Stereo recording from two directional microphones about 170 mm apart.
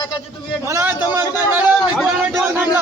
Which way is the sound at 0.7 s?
10° right (ahead or behind).